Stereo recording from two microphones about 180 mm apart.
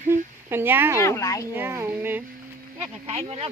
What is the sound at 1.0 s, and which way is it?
Speech, 15° left (ahead or behind).